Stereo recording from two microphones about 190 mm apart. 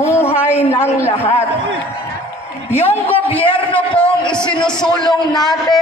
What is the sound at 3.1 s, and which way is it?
Speech, 30° left (ahead or behind).